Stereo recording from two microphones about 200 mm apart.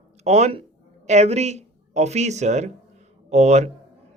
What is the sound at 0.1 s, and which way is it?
A man's voice, 35° right (ahead or behind).